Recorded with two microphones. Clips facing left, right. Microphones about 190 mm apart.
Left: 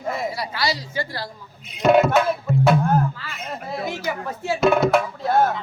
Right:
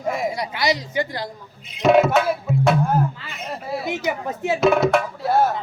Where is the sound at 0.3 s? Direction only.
20° right (ahead or behind).